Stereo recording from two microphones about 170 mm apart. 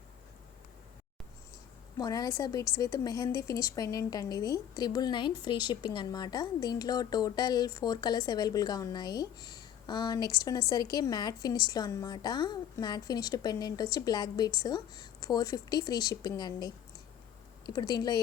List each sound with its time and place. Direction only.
2.0 s a woman's voice: 20° left (ahead or behind)